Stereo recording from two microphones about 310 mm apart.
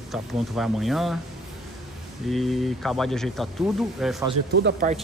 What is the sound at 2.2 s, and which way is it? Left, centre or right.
Speech, centre.